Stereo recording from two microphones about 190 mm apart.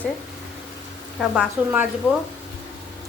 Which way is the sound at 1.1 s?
5° right (ahead or behind).